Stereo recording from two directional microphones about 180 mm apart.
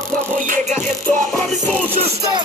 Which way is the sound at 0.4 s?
45° right (ahead or behind).